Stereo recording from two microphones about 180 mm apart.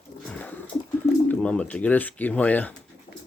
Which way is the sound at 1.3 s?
5° left (ahead or behind).